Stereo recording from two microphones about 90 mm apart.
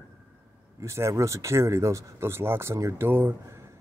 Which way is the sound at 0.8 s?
30° right (ahead or behind).